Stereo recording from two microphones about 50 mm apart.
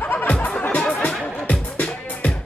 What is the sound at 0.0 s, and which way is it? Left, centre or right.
Music, left.